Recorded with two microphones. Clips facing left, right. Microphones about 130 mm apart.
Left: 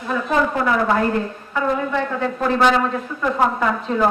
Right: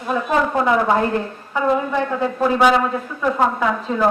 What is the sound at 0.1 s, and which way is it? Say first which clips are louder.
A woman's voice: right 1 dB; 20° right (ahead or behind).